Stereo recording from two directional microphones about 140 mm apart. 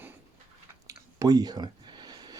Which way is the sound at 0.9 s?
25° right (ahead or behind).